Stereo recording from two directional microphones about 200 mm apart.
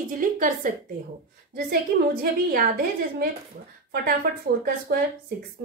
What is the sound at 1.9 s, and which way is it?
Speech, 60° right (ahead or behind).